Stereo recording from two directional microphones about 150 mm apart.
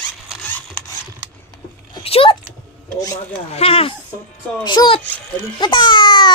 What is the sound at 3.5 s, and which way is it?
Speech, 40° left (ahead or behind).